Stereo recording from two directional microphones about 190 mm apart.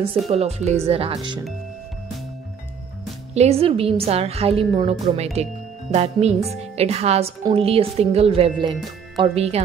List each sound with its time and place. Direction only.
0.3 s a woman's voice: 35° right (ahead or behind)
3.3 s a woman's voice: 35° right (ahead or behind)